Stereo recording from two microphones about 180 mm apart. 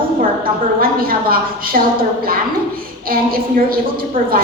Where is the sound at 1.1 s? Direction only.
55° right (ahead or behind).